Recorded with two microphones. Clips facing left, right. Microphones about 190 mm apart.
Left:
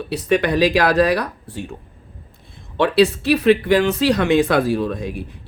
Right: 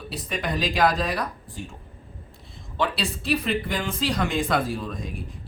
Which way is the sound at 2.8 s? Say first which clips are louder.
Left 12 dB; 65° left (ahead or behind).